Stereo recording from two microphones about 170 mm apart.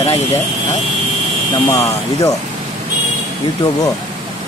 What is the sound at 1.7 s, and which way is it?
Speech, 20° left (ahead or behind).